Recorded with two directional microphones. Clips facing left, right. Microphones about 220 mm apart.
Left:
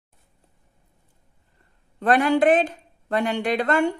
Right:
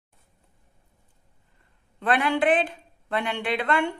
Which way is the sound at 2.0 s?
40° left (ahead or behind).